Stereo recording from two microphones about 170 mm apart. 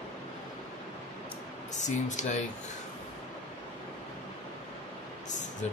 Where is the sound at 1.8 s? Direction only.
45° left (ahead or behind).